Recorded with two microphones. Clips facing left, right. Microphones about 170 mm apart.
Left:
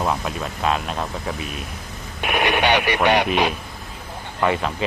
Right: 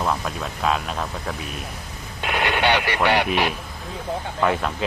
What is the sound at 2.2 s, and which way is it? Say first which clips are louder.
Speech: left 2 dB; 20° left (ahead or behind).